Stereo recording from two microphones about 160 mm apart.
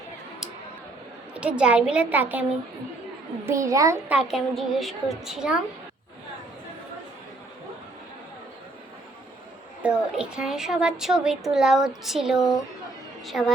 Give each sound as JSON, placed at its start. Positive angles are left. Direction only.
{"t": 1.3, "sound": "a woman's voice", "side_deg": -5}
{"t": 4.1, "sound": "a woman's voice", "side_deg": 0}
{"t": 9.8, "sound": "a woman's voice", "side_deg": -5}